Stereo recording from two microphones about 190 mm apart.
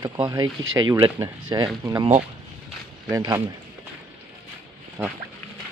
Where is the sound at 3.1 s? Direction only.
20° right (ahead or behind).